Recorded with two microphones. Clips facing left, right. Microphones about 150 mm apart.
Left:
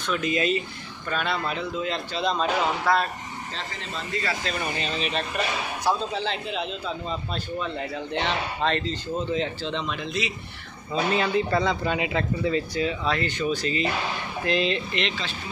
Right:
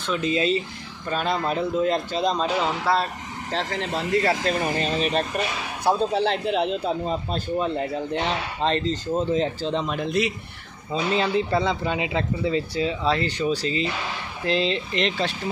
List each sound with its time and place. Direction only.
0.0 s a man's voice: 30° right (ahead or behind)
1.1 s a man's voice: 40° right (ahead or behind)
2.9 s a man's voice: 30° right (ahead or behind)
3.5 s speech: 70° right (ahead or behind)
4.6 s a man's voice: 45° right (ahead or behind)
5.9 s a man's voice: 55° right (ahead or behind)
10.9 s a man's voice: 25° right (ahead or behind)